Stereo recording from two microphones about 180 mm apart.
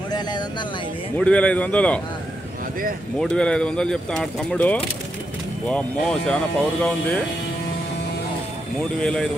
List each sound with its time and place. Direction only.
0.1 s speech: 25° left (ahead or behind)
1.1 s speech: 5° left (ahead or behind)
3.2 s speech: 5° left (ahead or behind)
9.0 s speech: 5° left (ahead or behind)